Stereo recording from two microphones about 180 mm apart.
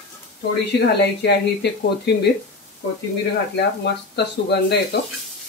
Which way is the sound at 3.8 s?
70° left (ahead or behind).